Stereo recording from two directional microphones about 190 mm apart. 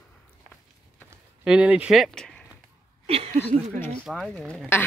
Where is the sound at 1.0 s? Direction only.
5° right (ahead or behind).